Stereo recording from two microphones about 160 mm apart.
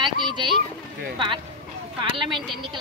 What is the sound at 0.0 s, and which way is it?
Boat, 30° right (ahead or behind).